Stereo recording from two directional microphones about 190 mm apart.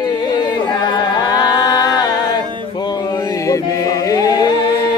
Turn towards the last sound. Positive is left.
turn(degrees=20)  # may be behind; listen again after turning